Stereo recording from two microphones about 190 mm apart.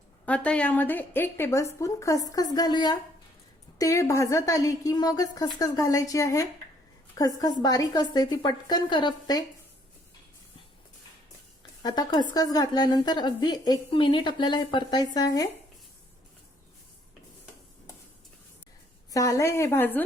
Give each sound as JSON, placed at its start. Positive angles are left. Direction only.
{"t": 0.3, "sound": "a woman's voice", "side_deg": 5}
{"t": 11.8, "sound": "a woman's voice", "side_deg": 20}
{"t": 19.1, "sound": "a woman's voice", "side_deg": 15}